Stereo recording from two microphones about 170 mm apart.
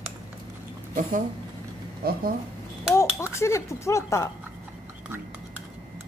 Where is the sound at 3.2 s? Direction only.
15° left (ahead or behind).